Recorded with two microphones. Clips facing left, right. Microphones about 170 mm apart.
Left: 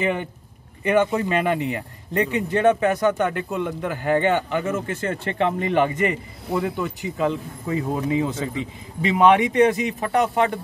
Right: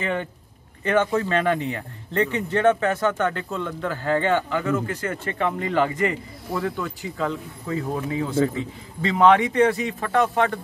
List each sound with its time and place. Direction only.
0.0 s a man's voice: 15° left (ahead or behind)